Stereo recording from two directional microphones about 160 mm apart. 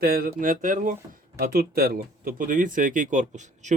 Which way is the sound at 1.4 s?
65° right (ahead or behind).